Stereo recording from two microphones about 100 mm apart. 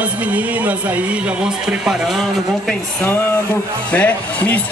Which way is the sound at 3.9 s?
15° left (ahead or behind).